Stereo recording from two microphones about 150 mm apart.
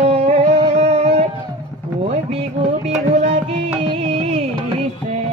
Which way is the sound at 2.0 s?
45° right (ahead or behind).